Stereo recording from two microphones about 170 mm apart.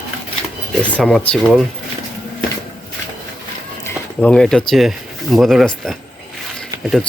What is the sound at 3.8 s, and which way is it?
Speech, 5° left (ahead or behind).